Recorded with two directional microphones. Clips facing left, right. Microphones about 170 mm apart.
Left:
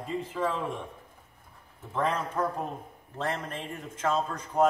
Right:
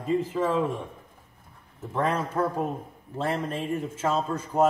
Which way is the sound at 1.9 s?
10° right (ahead or behind).